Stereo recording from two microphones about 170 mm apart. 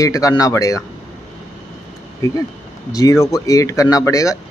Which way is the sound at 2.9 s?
20° left (ahead or behind).